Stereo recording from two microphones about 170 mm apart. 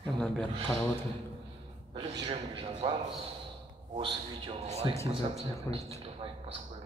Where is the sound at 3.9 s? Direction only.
30° right (ahead or behind).